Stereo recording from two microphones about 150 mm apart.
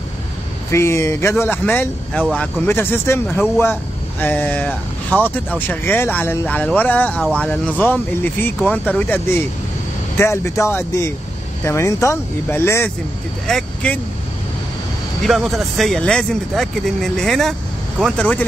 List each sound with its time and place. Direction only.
0.7 s speech: 20° left (ahead or behind)
13.5 s speech: 5° left (ahead or behind)
15.2 s speech: centre (ahead or behind)